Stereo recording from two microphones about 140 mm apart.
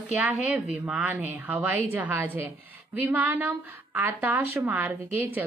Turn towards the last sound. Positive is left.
turn(degrees=-15)  # may be behind; listen again after turning